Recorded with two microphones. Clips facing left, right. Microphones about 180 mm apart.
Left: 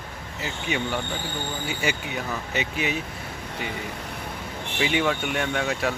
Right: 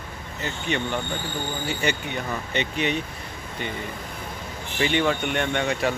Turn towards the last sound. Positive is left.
turn(degrees=0)  # may be behind; listen again after turning